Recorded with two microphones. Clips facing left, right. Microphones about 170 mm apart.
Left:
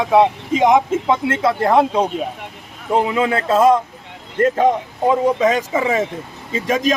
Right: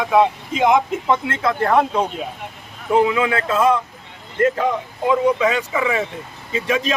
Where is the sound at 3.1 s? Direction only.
35° left (ahead or behind).